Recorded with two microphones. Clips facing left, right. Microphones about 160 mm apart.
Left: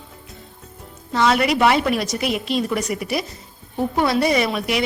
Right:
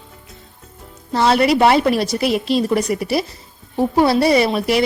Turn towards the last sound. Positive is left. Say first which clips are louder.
# right 5 dB
turn(degrees=-35)  # may be behind; listen again after turning